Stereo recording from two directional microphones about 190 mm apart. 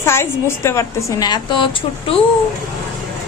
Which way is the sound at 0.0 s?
15° left (ahead or behind).